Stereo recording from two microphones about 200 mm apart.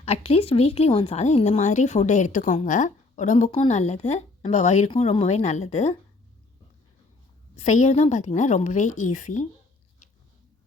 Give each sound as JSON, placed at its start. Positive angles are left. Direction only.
{"t": 0.0, "sound": "speech", "side_deg": 30}
{"t": 7.5, "sound": "speech", "side_deg": 35}